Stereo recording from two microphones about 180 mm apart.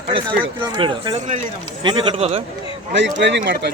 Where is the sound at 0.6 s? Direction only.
25° right (ahead or behind).